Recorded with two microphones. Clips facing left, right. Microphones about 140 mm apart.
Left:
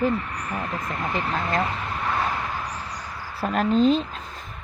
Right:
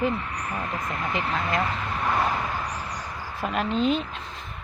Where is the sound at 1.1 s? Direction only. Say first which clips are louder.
Left 1 dB; 35° left (ahead or behind).